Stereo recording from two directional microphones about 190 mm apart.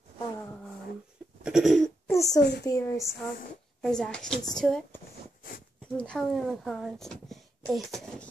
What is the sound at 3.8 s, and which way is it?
Speech, 5° left (ahead or behind).